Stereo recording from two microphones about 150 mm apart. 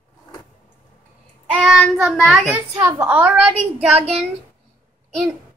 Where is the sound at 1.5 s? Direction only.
5° right (ahead or behind).